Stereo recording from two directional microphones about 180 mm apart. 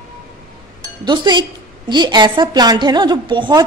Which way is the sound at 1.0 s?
25° right (ahead or behind).